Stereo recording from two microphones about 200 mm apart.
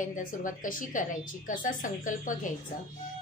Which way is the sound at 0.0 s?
40° left (ahead or behind).